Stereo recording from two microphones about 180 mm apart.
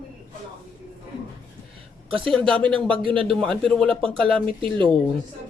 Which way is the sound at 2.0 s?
30° right (ahead or behind).